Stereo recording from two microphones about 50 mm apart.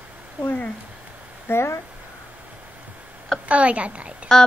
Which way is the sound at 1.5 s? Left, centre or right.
Left.